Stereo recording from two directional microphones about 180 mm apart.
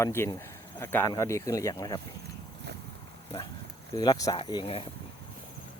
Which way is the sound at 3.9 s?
20° left (ahead or behind).